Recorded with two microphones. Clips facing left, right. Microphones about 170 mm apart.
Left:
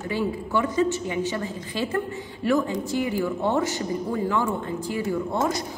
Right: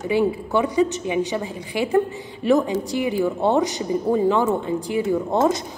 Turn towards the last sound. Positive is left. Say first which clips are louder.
# right 5 dB
turn(degrees=-20)  # may be behind; listen again after turning